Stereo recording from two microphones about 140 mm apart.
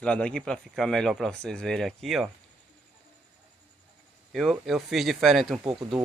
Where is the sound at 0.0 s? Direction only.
5° left (ahead or behind).